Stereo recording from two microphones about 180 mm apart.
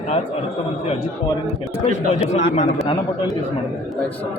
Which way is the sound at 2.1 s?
35° left (ahead or behind).